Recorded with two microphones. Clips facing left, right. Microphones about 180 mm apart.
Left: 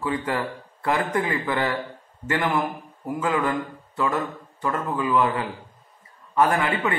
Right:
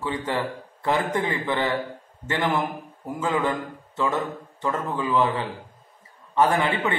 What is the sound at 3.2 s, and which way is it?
A man's voice, 25° right (ahead or behind).